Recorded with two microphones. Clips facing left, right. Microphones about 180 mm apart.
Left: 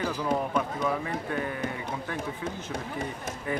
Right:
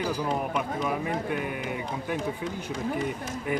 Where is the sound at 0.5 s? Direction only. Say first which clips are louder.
Even; 15° right (ahead or behind).